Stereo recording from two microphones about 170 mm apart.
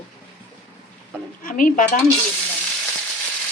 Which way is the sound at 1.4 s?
55° left (ahead or behind).